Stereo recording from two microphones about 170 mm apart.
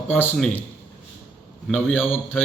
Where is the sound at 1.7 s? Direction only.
10° left (ahead or behind).